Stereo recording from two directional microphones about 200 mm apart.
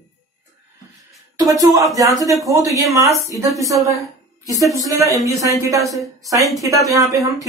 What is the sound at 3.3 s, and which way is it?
Speech, 15° right (ahead or behind).